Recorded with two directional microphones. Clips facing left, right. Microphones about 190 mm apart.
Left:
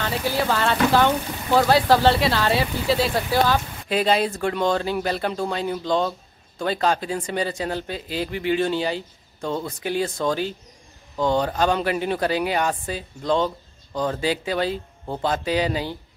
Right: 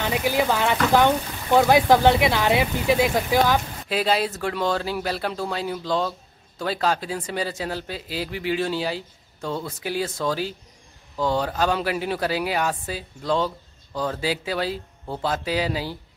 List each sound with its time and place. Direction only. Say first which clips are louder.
0.0 s speech: right 2 dB; 15° right (ahead or behind)
3.9 s speech: left 2 dB; 5° right (ahead or behind)